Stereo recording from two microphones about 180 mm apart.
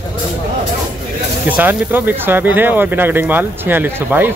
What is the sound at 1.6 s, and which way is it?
Speech, 10° right (ahead or behind).